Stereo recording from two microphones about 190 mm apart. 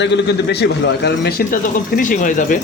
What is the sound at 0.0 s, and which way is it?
Speech, 65° left (ahead or behind).